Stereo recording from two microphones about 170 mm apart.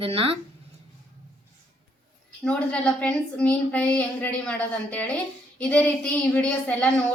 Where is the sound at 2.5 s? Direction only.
5° left (ahead or behind).